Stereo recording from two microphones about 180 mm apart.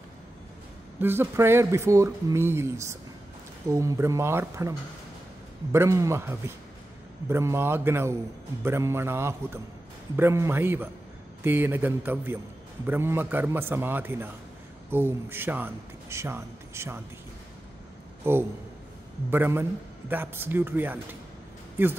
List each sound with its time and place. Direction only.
0.9 s a man's voice: 10° right (ahead or behind)
18.3 s speech: 15° right (ahead or behind)